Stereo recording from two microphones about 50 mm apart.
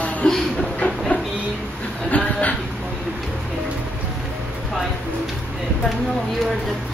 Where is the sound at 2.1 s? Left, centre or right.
Left.